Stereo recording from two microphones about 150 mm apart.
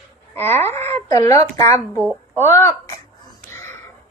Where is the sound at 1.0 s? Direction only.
20° left (ahead or behind).